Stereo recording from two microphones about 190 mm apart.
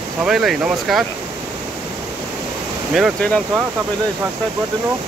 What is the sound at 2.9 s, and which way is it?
Speech, centre (ahead or behind).